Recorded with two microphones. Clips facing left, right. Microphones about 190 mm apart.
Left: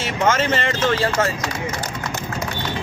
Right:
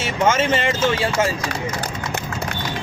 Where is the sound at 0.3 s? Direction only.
10° right (ahead or behind).